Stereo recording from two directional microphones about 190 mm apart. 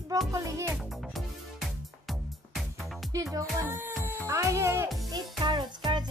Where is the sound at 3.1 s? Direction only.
15° right (ahead or behind).